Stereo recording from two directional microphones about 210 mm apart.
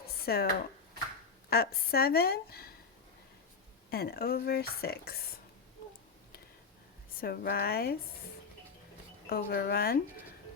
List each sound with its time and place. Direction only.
0.0 s a sound: 45° left (ahead or behind)
1.5 s speech: 45° left (ahead or behind)
3.8 s speech: 45° left (ahead or behind)
7.2 s speech: 45° left (ahead or behind)
9.3 s speech: 50° left (ahead or behind)